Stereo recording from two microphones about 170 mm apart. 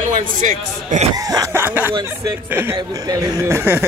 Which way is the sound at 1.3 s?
15° right (ahead or behind).